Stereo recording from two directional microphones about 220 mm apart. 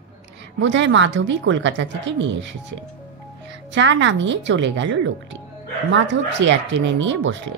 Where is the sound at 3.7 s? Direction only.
55° right (ahead or behind).